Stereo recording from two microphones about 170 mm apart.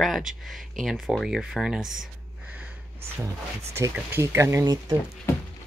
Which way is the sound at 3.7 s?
15° right (ahead or behind).